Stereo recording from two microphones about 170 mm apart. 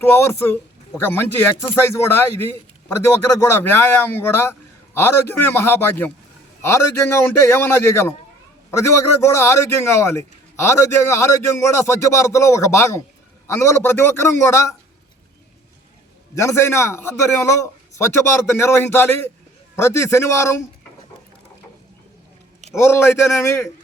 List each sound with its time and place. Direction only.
0.0 s a man's voice: 15° left (ahead or behind)
3.5 s a man's voice: 15° left (ahead or behind)
16.3 s a man's voice: 15° left (ahead or behind)
22.7 s a man's voice: 15° left (ahead or behind)